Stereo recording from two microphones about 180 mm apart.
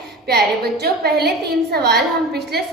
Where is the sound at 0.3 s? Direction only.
60° right (ahead or behind).